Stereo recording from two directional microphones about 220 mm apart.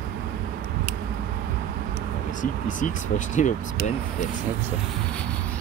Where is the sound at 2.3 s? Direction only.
35° left (ahead or behind).